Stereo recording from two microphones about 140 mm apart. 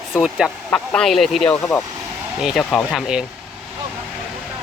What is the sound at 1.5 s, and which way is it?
Speech, 20° left (ahead or behind).